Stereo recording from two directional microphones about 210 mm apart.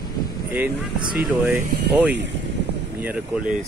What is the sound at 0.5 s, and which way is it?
Speech, 5° right (ahead or behind).